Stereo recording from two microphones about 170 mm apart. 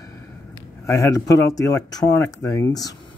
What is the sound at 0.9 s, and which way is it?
Speech, 20° left (ahead or behind).